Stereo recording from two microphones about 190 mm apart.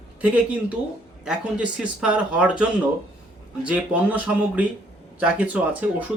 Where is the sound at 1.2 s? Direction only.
5° right (ahead or behind).